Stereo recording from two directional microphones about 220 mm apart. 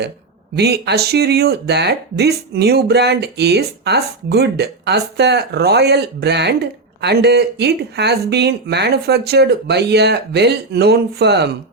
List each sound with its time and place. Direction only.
0.5 s speech: 50° right (ahead or behind)